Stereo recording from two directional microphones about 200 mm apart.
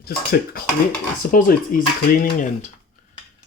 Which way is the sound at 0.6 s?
45° left (ahead or behind).